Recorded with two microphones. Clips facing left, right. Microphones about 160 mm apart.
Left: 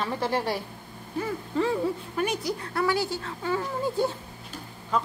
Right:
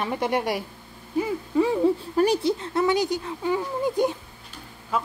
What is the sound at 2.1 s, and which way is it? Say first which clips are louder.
Speech: right 7 dB; 30° right (ahead or behind).